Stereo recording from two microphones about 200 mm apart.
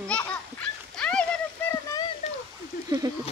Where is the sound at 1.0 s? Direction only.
5° left (ahead or behind).